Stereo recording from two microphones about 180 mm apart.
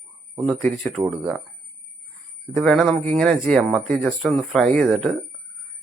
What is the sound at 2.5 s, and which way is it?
Speech, centre (ahead or behind).